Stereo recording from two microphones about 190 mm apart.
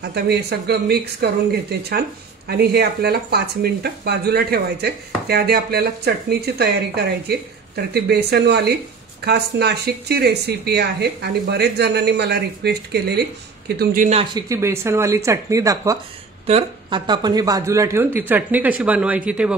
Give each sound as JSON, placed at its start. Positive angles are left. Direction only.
{"t": 0.0, "sound": "speech", "side_deg": -60}
{"t": 13.7, "sound": "speech", "side_deg": -45}
{"t": 14.3, "sound": "speech", "side_deg": -15}
{"t": 16.4, "sound": "speech", "side_deg": -30}